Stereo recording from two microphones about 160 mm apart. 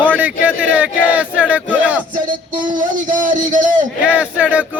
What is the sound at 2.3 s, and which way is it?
A man's voice, 55° right (ahead or behind).